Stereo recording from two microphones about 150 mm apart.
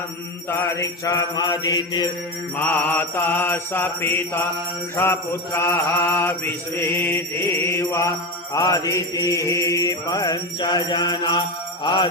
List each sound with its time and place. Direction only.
0.8 s mantra: 20° left (ahead or behind)
2.6 s mantra: 10° left (ahead or behind); by 12.0 s 30° left (ahead or behind)